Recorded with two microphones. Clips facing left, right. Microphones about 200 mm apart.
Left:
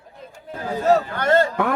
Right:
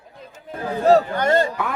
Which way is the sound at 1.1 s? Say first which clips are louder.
Even; 15° right (ahead or behind).